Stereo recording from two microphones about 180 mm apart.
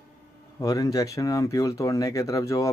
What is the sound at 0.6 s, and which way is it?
Speech, 20° left (ahead or behind).